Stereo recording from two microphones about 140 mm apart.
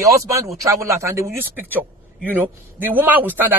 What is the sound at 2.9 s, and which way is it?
Speech, 10° right (ahead or behind).